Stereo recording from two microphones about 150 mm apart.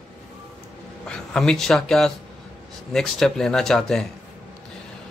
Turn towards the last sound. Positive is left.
turn(degrees=5)  # may be behind; listen again after turning